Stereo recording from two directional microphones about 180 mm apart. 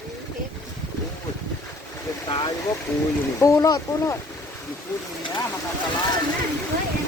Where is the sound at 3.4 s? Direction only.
20° left (ahead or behind).